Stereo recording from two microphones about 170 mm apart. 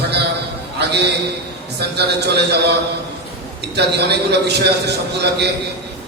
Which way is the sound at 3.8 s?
75° right (ahead or behind).